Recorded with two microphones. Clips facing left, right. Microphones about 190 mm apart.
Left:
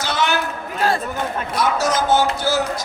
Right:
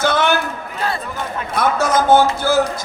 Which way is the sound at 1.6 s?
55° right (ahead or behind).